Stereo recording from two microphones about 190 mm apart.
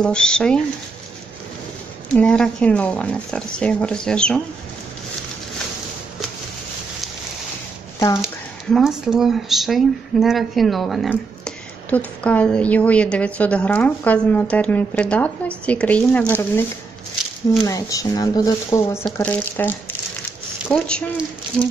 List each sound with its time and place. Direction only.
0.0 s speech: 5° left (ahead or behind)
2.1 s speech: 5° left (ahead or behind)
8.2 s speech: centre (ahead or behind)
17.6 s speech: 20° left (ahead or behind)
19.1 s speech: 10° left (ahead or behind)